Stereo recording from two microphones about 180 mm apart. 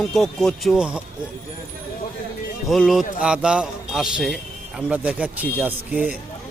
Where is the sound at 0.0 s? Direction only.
Centre (ahead or behind).